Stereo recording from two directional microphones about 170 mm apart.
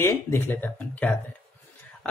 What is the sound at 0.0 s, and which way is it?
Speech, 15° left (ahead or behind).